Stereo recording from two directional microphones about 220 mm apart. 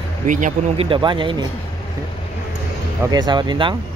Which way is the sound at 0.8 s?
20° right (ahead or behind).